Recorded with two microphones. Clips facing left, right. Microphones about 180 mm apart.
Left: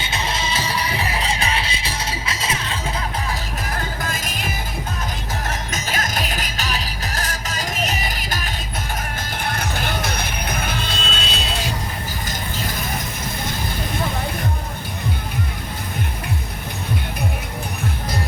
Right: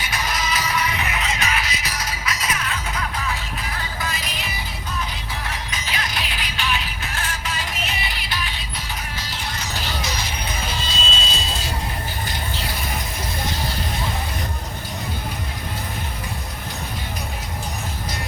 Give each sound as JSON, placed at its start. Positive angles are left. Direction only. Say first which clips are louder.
{"t": 0.0, "sound": "music", "louder": "left 1 dB", "side_deg": 25}